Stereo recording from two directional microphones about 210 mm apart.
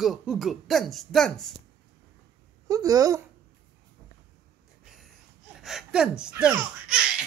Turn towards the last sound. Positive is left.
turn(degrees=-5)  # may be behind; listen again after turning